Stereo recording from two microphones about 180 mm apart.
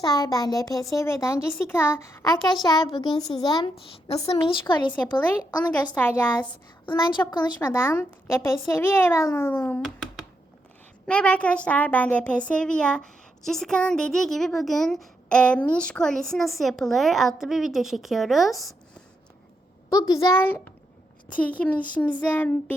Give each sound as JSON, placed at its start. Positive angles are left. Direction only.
{"t": 0.0, "sound": "a child's voice", "side_deg": 20}
{"t": 6.0, "sound": "a child's voice", "side_deg": 10}
{"t": 6.8, "sound": "a woman's voice", "side_deg": 25}
{"t": 7.6, "sound": "a child's voice", "side_deg": 15}
{"t": 9.8, "sound": "a sound", "side_deg": 0}
{"t": 11.0, "sound": "speech", "side_deg": 5}
{"t": 19.9, "sound": "a woman's voice", "side_deg": 20}